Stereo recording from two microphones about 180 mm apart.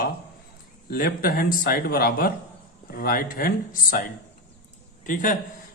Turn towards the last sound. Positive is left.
turn(degrees=45)  # may be behind; listen again after turning